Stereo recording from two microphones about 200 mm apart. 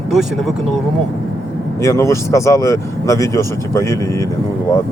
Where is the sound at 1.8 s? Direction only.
15° left (ahead or behind).